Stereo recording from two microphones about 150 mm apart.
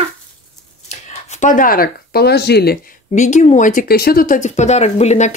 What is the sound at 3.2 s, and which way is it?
Speech, 55° left (ahead or behind).